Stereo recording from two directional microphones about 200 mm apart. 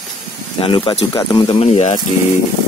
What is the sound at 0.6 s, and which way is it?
Speech, 25° left (ahead or behind).